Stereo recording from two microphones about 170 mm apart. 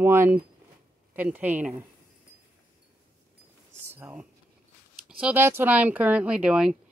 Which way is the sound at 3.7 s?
10° right (ahead or behind).